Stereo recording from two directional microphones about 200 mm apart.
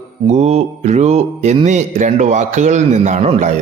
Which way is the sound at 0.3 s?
35° right (ahead or behind).